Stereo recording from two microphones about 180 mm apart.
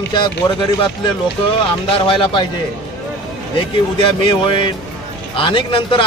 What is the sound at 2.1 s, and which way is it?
Speech, 25° left (ahead or behind).